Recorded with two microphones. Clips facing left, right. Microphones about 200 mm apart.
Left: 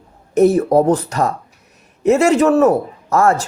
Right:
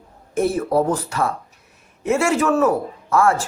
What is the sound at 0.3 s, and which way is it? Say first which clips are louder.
Speech: left 7 dB; 40° left (ahead or behind).